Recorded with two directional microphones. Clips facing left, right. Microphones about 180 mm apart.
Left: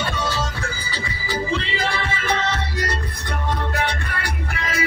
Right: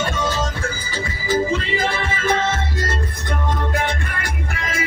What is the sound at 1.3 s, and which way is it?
Music, 45° right (ahead or behind).